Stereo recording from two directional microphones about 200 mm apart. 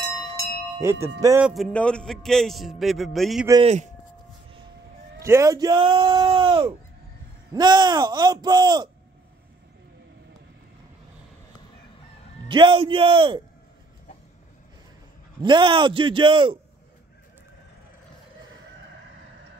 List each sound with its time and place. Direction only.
0.7 s music: 15° right (ahead or behind)
1.5 s a man's voice: 5° left (ahead or behind)
3.6 s speech: 35° right (ahead or behind)
5.2 s speech: 15° right (ahead or behind)
12.4 s speech: 25° right (ahead or behind)
15.4 s speech: 25° right (ahead or behind)